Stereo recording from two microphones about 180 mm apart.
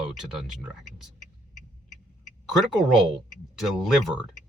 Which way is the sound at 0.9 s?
45° left (ahead or behind).